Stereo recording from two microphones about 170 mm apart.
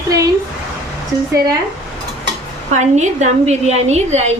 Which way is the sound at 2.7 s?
45° right (ahead or behind).